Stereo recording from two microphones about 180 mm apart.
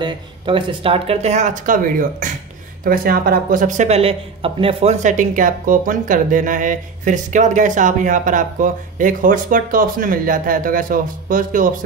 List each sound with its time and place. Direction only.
0.0 s speech: 30° right (ahead or behind)
5.0 s speech: 45° right (ahead or behind)